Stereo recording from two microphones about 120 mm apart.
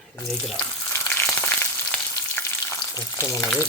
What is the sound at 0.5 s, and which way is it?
Frying, 20° left (ahead or behind).